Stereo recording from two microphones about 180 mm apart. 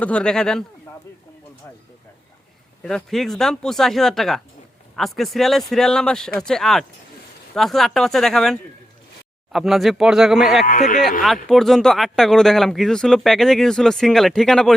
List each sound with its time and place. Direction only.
0.0 s speech: 5° left (ahead or behind)
2.8 s speech: 5° left (ahead or behind)
10.7 s speech: 50° left (ahead or behind)
11.4 s speech: centre (ahead or behind)